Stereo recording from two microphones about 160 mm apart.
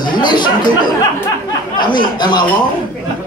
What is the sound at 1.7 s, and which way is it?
Speech, 30° left (ahead or behind).